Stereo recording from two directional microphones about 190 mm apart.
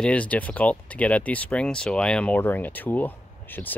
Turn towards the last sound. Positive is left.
turn(degrees=10)  # may be behind; listen again after turning